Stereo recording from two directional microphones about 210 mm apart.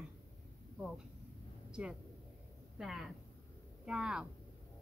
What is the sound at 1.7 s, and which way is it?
A woman's voice, 5° right (ahead or behind).